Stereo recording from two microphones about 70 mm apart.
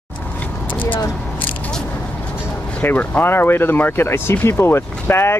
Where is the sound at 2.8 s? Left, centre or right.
Left.